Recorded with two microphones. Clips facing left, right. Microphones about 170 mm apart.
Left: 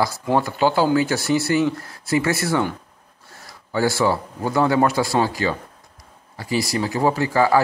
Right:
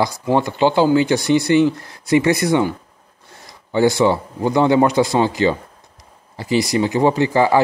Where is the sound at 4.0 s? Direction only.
20° right (ahead or behind).